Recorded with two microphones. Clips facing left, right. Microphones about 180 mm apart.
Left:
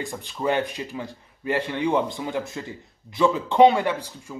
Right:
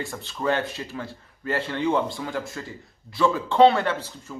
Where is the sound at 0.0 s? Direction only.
15° left (ahead or behind).